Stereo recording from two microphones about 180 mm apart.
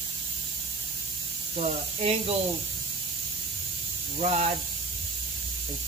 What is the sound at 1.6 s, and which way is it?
Speech, 35° right (ahead or behind).